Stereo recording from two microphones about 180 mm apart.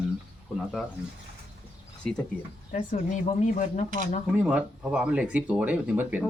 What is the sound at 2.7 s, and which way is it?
Speech, 45° left (ahead or behind).